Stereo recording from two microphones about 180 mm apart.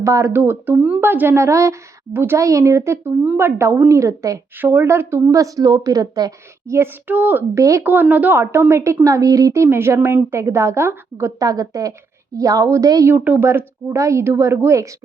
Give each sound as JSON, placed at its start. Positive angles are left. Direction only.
{"t": 0.0, "sound": "a woman's voice", "side_deg": -15}